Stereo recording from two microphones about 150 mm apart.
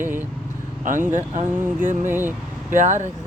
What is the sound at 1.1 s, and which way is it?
Speech, 55° right (ahead or behind).